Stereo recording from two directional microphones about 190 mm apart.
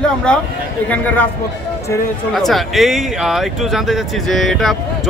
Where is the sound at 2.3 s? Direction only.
Centre (ahead or behind).